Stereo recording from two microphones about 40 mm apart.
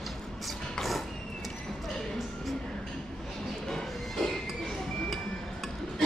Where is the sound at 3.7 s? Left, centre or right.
Centre.